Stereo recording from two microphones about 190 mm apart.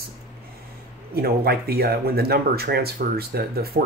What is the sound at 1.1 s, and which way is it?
Speech, 55° right (ahead or behind).